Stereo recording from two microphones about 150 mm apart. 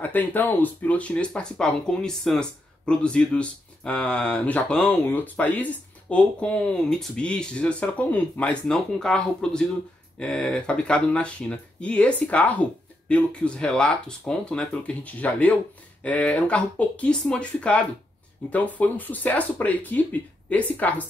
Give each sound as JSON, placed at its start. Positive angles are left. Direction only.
{"t": 0.0, "sound": "speech", "side_deg": 15}